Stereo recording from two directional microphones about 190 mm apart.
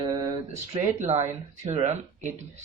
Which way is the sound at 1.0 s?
35° right (ahead or behind).